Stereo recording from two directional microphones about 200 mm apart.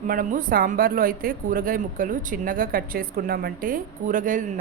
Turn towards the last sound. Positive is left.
turn(degrees=-40)  # may be behind; listen again after turning